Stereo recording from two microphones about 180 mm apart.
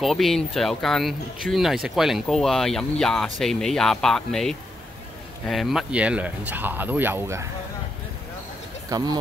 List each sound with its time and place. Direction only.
0.0 s speech: centre (ahead or behind)
8.9 s speech: 20° right (ahead or behind)